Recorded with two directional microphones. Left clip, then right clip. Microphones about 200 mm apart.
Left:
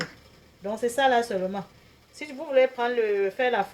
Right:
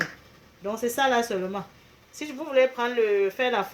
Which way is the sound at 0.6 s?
35° right (ahead or behind).